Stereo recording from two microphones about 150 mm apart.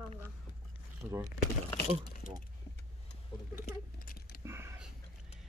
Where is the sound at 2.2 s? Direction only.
70° left (ahead or behind).